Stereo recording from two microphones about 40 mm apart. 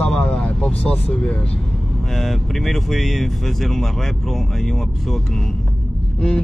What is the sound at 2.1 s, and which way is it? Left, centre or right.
Speech, centre.